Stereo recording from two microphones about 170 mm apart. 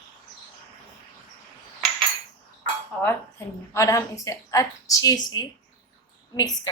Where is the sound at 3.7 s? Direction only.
15° left (ahead or behind).